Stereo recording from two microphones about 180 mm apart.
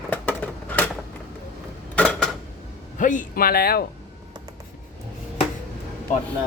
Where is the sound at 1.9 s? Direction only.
5° left (ahead or behind).